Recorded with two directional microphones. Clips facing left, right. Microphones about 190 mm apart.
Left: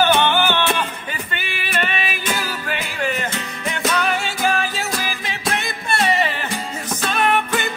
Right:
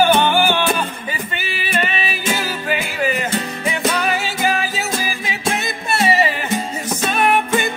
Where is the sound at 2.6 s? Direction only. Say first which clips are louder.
Right 4 dB; 5° right (ahead or behind).